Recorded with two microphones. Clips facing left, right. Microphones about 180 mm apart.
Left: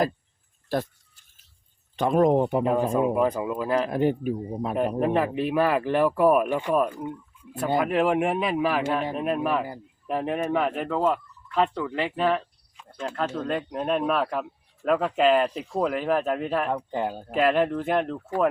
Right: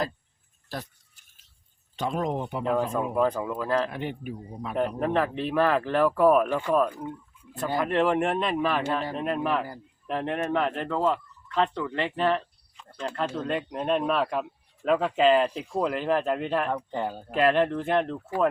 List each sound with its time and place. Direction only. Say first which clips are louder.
2.0 s speech: left 8 dB; 55° left (ahead or behind)
2.9 s speech: left 3 dB; 10° left (ahead or behind)
3.8 s speech: left 9 dB; 40° left (ahead or behind)
5.0 s speech: left 2 dB; 10° left (ahead or behind)